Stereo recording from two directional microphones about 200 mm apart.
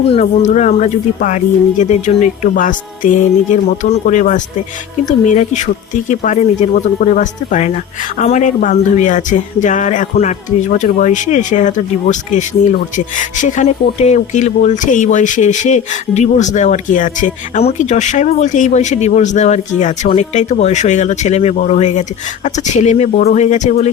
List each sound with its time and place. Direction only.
0.1 s speech: 35° left (ahead or behind)